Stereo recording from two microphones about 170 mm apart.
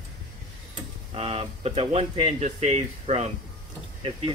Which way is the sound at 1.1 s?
35° right (ahead or behind).